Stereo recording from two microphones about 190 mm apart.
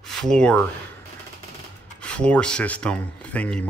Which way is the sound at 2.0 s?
5° left (ahead or behind).